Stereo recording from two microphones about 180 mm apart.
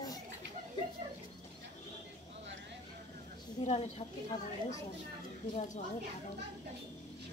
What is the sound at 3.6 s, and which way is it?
A woman's voice, 35° left (ahead or behind).